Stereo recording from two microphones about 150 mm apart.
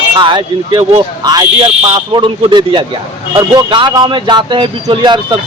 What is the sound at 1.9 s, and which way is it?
Speech, 30° right (ahead or behind).